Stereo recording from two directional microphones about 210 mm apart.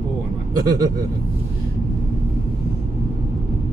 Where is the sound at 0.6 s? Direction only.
15° right (ahead or behind).